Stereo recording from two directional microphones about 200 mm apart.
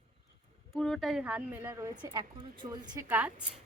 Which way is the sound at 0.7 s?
Centre (ahead or behind).